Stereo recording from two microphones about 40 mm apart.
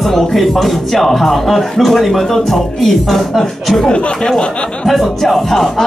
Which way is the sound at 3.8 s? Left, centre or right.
Centre.